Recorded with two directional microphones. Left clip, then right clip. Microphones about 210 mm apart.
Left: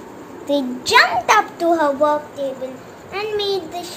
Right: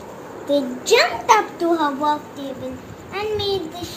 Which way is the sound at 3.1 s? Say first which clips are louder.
Left 1 dB; 40° left (ahead or behind).